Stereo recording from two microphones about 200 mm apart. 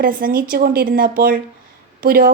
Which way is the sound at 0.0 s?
45° right (ahead or behind).